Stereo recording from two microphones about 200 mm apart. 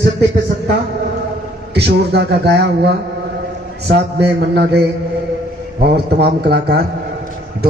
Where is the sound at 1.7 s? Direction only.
55° right (ahead or behind).